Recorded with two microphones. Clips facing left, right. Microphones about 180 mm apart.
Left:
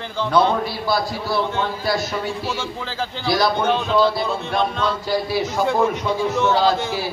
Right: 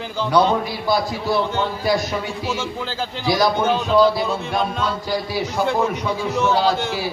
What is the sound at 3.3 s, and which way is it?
Speech, 15° right (ahead or behind).